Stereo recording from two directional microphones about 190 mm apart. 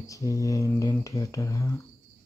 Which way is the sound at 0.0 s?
15° left (ahead or behind).